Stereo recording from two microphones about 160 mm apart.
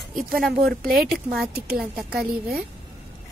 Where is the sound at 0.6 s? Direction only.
65° right (ahead or behind).